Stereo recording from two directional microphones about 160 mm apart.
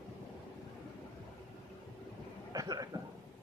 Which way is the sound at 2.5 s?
25° right (ahead or behind).